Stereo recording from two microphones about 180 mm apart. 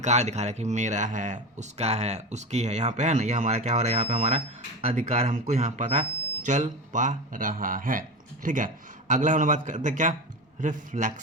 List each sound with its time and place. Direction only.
0.0 s a man's voice: 40° right (ahead or behind)